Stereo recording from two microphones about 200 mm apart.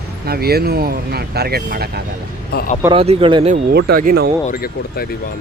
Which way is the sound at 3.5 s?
50° right (ahead or behind).